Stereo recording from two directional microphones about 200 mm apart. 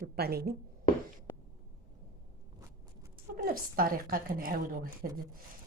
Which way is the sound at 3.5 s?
45° right (ahead or behind).